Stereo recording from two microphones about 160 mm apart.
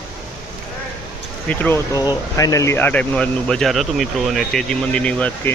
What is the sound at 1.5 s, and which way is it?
Speech, 15° left (ahead or behind).